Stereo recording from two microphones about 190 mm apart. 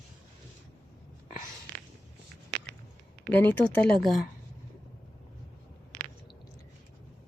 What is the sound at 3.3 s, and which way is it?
Speech, 10° left (ahead or behind).